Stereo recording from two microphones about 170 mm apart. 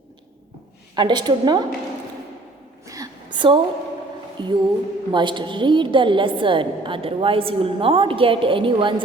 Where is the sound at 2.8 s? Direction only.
20° right (ahead or behind).